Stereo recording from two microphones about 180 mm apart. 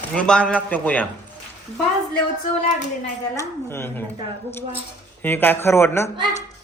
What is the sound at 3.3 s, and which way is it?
Speech, 15° left (ahead or behind).